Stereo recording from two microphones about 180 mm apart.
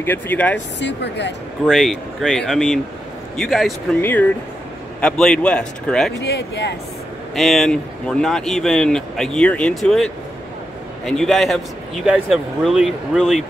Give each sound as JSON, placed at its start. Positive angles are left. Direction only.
{"t": 0.0, "sound": "speech", "side_deg": 10}
{"t": 0.7, "sound": "speech", "side_deg": 75}
{"t": 1.7, "sound": "speech", "side_deg": 0}
{"t": 6.1, "sound": "speech", "side_deg": 70}
{"t": 7.3, "sound": "speech", "side_deg": 0}